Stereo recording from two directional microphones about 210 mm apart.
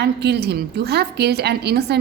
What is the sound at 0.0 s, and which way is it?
A woman's voice, 50° right (ahead or behind).